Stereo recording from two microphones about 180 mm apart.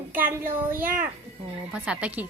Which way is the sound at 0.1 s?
10° right (ahead or behind).